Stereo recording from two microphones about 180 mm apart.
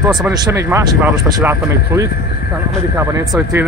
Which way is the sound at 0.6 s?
15° right (ahead or behind).